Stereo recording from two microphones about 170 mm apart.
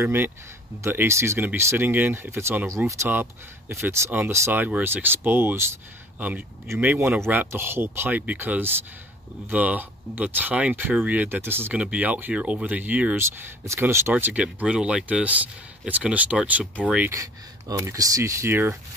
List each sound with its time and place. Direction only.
0.0 s speech: 15° right (ahead or behind)
17.1 s speech: 20° right (ahead or behind)